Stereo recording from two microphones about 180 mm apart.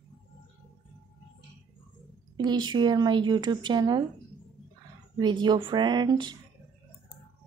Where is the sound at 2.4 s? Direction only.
25° right (ahead or behind).